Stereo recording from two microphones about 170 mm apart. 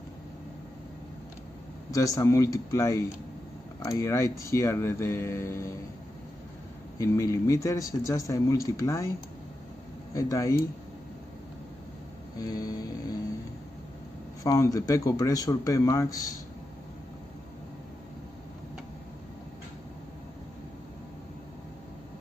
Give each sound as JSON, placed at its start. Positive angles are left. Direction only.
{"t": 1.9, "sound": "speech", "side_deg": 20}
{"t": 7.0, "sound": "speech", "side_deg": 20}
{"t": 10.1, "sound": "speech", "side_deg": 20}
{"t": 12.4, "sound": "speech", "side_deg": 20}
{"t": 14.4, "sound": "speech", "side_deg": 20}